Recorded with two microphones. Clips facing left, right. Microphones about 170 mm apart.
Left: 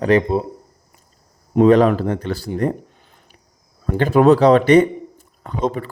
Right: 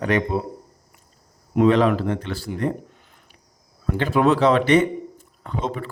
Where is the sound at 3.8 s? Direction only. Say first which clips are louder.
Left 6 dB; 40° left (ahead or behind).